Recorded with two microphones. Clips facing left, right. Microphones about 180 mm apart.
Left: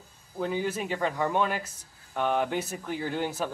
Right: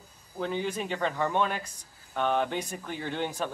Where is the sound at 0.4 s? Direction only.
5° left (ahead or behind).